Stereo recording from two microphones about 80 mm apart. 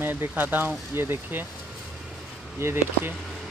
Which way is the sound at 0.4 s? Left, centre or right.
Right.